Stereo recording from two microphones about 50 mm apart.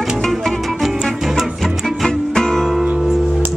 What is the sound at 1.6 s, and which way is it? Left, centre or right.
Music, centre.